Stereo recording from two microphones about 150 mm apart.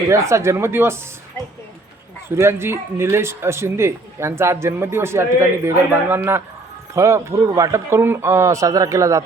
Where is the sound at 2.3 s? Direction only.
15° right (ahead or behind).